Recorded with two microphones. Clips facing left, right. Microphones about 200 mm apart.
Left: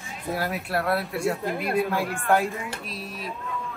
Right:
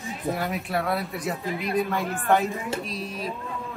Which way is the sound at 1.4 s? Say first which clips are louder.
Left 2 dB; 50° left (ahead or behind).